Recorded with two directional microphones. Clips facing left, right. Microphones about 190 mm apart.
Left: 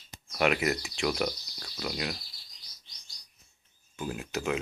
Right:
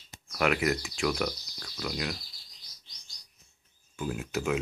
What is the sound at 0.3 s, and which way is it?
Speech, 20° left (ahead or behind).